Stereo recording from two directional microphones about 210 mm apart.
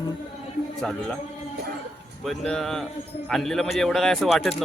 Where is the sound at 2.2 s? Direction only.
Centre (ahead or behind).